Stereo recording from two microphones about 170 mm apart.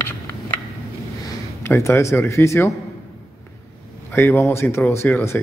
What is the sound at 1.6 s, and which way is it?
Speech, 15° left (ahead or behind).